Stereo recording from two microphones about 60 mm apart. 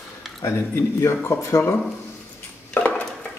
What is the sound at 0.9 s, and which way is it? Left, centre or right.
Speech, left.